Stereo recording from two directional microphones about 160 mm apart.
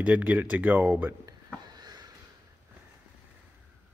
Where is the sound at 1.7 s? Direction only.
25° right (ahead or behind).